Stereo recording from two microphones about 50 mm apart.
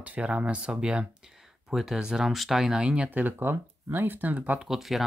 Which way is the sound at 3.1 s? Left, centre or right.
Right.